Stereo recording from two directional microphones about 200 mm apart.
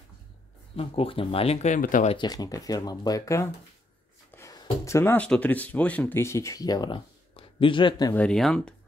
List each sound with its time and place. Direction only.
0.7 s speech: 30° left (ahead or behind)
2.1 s speech: 20° left (ahead or behind)
8.1 s speech: 5° left (ahead or behind)